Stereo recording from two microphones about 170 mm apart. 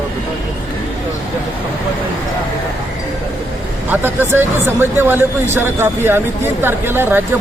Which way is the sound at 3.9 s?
10° right (ahead or behind).